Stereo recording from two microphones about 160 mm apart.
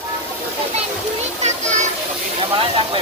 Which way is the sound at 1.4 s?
45° right (ahead or behind).